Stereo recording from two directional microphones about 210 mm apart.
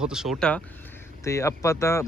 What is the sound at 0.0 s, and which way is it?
Speech, 5° right (ahead or behind).